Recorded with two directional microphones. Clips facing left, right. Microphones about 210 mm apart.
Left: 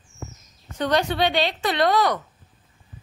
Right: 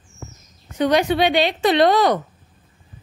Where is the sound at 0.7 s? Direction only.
10° right (ahead or behind).